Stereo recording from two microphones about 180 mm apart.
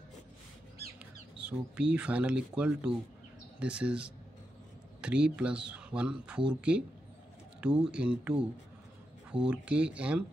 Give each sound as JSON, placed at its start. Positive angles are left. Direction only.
{"t": 1.4, "sound": "speech", "side_deg": -5}
{"t": 7.6, "sound": "speech", "side_deg": -5}